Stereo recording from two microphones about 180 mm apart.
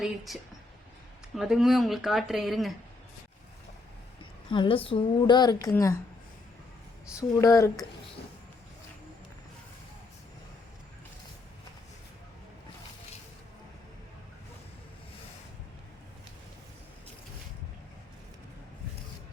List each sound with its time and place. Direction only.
1.4 s speech: centre (ahead or behind)
4.2 s a woman's voice: 25° left (ahead or behind)
7.2 s speech: 15° left (ahead or behind)